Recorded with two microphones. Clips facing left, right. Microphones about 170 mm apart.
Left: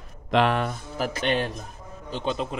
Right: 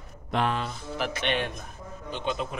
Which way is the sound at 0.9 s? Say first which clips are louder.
Left 3 dB; 40° left (ahead or behind).